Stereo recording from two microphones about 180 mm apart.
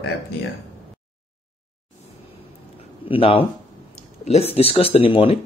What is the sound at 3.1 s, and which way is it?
Speech, 30° left (ahead or behind).